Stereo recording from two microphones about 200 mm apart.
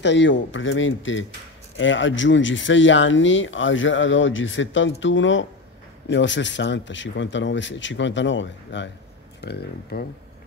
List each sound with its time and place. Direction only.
0.0 s speech: 65° left (ahead or behind)
9.4 s speech: 55° left (ahead or behind)